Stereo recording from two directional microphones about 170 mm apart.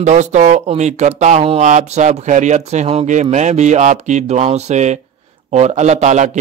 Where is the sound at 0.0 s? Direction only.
45° right (ahead or behind).